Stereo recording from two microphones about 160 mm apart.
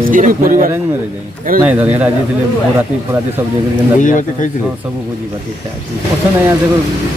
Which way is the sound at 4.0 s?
55° left (ahead or behind).